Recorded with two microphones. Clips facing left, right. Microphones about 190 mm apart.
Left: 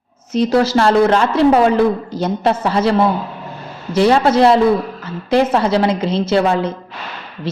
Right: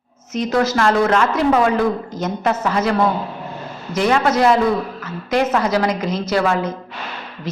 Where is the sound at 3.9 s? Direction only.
30° left (ahead or behind).